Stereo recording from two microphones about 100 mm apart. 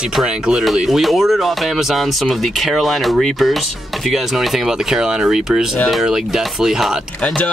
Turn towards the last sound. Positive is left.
turn(degrees=-5)  # may be behind; listen again after turning